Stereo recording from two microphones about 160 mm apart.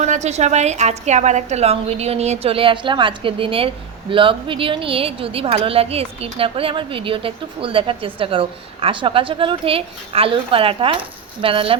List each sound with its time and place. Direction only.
0.0 s a woman's voice: 45° right (ahead or behind)